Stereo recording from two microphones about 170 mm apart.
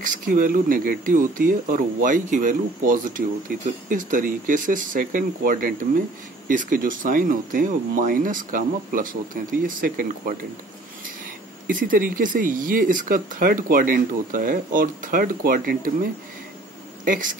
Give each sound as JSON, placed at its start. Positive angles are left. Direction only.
{"t": 0.0, "sound": "speech", "side_deg": -50}
{"t": 11.6, "sound": "speech", "side_deg": -55}